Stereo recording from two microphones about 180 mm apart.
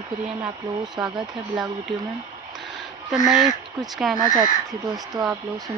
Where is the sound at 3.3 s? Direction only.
Centre (ahead or behind).